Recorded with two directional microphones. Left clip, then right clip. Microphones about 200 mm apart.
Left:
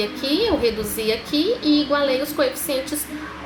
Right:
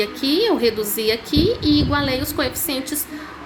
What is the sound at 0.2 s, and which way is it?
A woman's voice, 50° right (ahead or behind).